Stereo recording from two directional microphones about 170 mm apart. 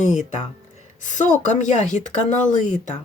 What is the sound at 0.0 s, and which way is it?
Speech, 45° left (ahead or behind).